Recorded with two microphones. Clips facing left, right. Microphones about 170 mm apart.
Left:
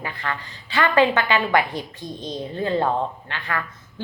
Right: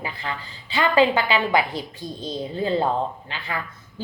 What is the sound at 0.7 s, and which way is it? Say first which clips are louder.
Speech: even; 25° right (ahead or behind).